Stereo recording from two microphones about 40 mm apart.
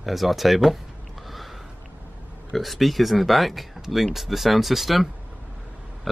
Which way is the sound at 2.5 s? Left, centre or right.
Centre.